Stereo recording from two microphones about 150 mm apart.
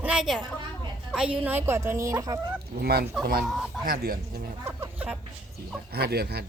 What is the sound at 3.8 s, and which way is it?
Speech, 80° right.